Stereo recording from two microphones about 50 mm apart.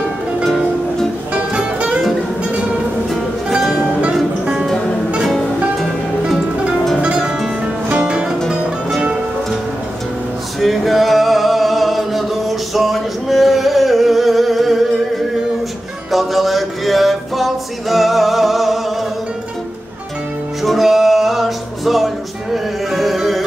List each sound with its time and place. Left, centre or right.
1.3 s music: right
3.7 s music: right
7.0 s music: centre
10.6 s music: centre
16.1 s a sound: centre
20.6 s music: centre